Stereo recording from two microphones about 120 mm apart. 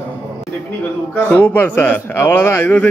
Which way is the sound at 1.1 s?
15° left (ahead or behind).